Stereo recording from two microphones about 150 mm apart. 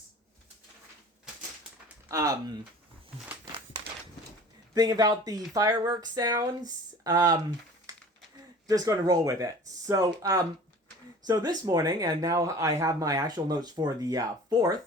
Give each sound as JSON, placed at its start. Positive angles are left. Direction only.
{"t": 2.0, "sound": "speech", "side_deg": -20}
{"t": 4.7, "sound": "speech", "side_deg": -25}
{"t": 8.6, "sound": "speech", "side_deg": -25}